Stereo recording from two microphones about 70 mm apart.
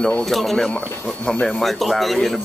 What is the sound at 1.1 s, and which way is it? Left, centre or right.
Speech, centre.